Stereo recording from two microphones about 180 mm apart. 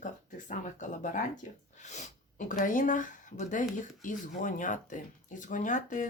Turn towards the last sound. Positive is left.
turn(degrees=45)  # may be behind; listen again after turning